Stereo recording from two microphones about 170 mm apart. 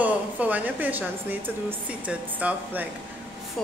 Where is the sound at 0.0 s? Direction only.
10° right (ahead or behind).